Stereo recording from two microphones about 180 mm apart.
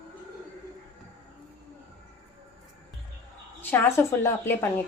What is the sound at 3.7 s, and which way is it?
Speech, 10° left (ahead or behind).